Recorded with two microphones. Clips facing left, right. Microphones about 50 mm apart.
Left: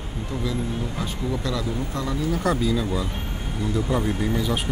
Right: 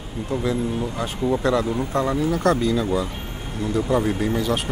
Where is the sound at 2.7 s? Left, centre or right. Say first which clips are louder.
Right 3 dB; centre.